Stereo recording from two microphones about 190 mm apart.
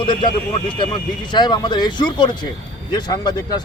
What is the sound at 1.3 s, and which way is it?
Speech, 20° left (ahead or behind).